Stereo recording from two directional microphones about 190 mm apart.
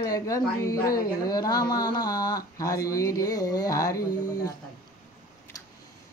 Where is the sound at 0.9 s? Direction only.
50° left (ahead or behind).